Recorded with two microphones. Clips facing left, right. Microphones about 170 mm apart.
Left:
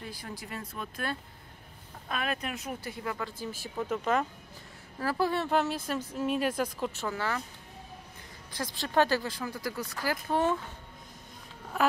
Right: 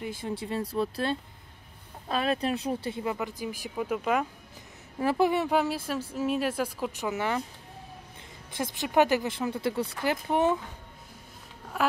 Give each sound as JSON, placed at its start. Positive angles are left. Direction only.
{"t": 0.0, "sound": "speech", "side_deg": -25}
{"t": 5.0, "sound": "speech", "side_deg": -20}
{"t": 8.5, "sound": "speech", "side_deg": -20}
{"t": 11.7, "sound": "speech", "side_deg": -5}